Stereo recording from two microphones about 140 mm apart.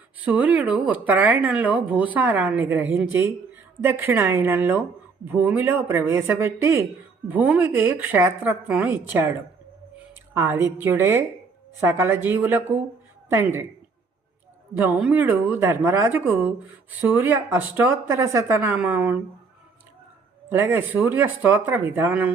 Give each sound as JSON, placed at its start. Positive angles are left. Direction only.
{"t": 0.2, "sound": "speech", "side_deg": -10}
{"t": 10.3, "sound": "speech", "side_deg": -20}
{"t": 14.8, "sound": "speech", "side_deg": -10}
{"t": 20.5, "sound": "speech", "side_deg": -15}